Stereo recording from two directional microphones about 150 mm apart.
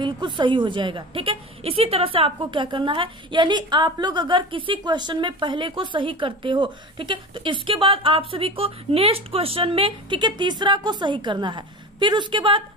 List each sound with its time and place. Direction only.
0.0 s a woman's voice: 30° right (ahead or behind)